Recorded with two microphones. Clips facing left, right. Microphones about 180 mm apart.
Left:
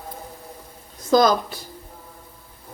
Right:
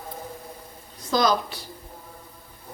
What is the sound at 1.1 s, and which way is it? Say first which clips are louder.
Speech: left 5 dB; 50° left (ahead or behind).